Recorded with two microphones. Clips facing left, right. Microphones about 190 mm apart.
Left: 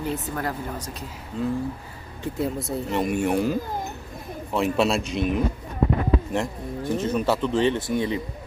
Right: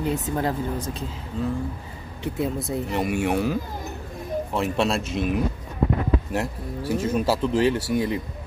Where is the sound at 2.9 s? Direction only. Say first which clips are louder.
Left 1 dB; 5° right (ahead or behind).